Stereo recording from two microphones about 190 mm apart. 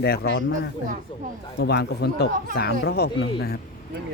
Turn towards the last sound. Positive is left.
turn(degrees=55)  # may be behind; listen again after turning